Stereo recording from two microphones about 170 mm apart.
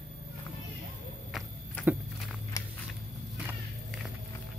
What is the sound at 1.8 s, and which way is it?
Walk, 10° left (ahead or behind).